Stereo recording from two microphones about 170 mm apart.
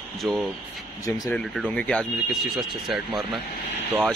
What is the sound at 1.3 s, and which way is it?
A man's voice, centre (ahead or behind).